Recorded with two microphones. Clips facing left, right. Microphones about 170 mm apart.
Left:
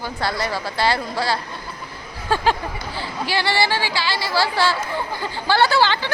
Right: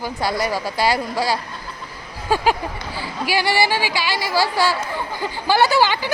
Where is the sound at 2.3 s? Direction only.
10° right (ahead or behind).